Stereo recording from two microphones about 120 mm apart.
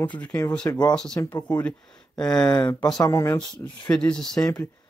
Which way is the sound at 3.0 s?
25° left (ahead or behind).